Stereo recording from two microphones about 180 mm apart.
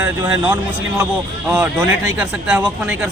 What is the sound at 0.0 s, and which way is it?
Speech, 10° right (ahead or behind).